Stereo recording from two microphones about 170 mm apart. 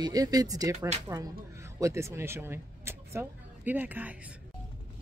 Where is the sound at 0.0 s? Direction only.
20° right (ahead or behind).